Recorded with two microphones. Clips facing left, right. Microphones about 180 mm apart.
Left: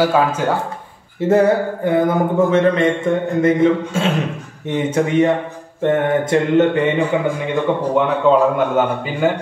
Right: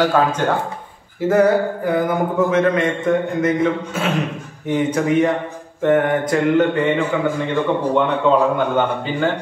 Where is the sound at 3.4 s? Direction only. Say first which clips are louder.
Left 4 dB; 30° left (ahead or behind).